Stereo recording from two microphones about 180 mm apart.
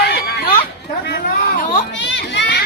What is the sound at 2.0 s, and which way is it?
Children playing, 75° left (ahead or behind).